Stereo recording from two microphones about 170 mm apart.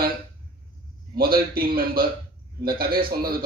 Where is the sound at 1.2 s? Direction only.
60° right (ahead or behind).